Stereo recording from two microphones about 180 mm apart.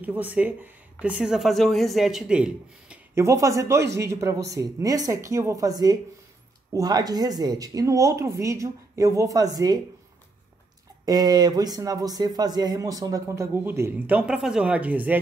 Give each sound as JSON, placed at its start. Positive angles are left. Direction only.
{"t": 0.0, "sound": "a man's voice", "side_deg": -10}
{"t": 11.1, "sound": "a man's voice", "side_deg": -20}